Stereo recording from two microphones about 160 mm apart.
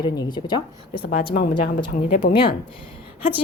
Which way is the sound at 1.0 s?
65° left (ahead or behind).